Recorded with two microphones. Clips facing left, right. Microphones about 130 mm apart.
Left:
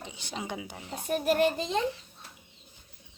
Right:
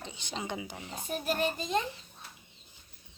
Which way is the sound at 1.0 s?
65° left (ahead or behind).